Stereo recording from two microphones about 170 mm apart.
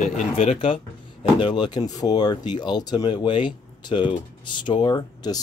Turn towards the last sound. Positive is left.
turn(degrees=25)  # may be behind; listen again after turning